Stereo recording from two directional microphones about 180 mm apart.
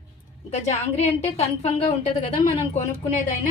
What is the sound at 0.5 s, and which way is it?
A woman's voice, 35° left (ahead or behind).